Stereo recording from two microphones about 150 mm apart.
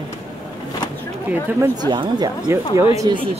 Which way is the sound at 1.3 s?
10° right (ahead or behind).